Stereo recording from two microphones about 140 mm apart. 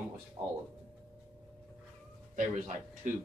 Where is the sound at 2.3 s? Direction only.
65° right (ahead or behind).